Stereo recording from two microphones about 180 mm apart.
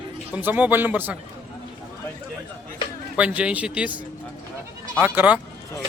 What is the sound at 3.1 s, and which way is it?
Speech, 5° right (ahead or behind).